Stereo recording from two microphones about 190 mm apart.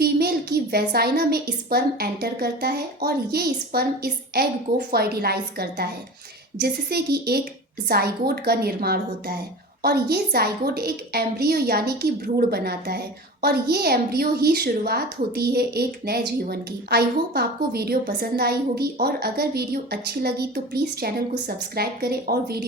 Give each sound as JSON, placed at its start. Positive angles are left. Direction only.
{"t": 0.0, "sound": "a woman's voice", "side_deg": -55}